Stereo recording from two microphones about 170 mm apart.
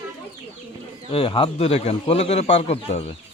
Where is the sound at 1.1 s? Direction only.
35° left (ahead or behind).